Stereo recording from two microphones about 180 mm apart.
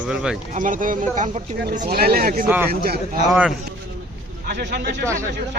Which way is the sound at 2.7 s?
60° right (ahead or behind).